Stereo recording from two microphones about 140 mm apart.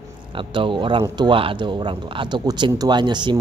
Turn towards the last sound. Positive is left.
turn(degrees=-30)  # may be behind; listen again after turning